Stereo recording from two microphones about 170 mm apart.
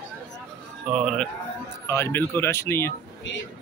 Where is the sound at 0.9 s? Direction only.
Centre (ahead or behind).